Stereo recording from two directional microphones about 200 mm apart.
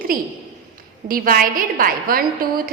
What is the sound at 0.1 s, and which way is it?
A woman's voice, 45° right (ahead or behind).